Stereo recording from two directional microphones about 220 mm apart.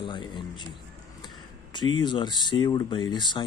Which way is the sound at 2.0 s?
20° left (ahead or behind).